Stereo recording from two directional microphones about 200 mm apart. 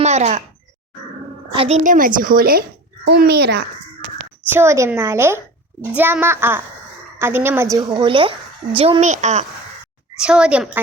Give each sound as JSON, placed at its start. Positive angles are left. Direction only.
{"t": 0.0, "sound": "speech", "side_deg": -35}
{"t": 1.5, "sound": "a woman's voice", "side_deg": -30}
{"t": 4.5, "sound": "a woman's voice", "side_deg": -15}
{"t": 10.2, "sound": "a child's voice", "side_deg": -5}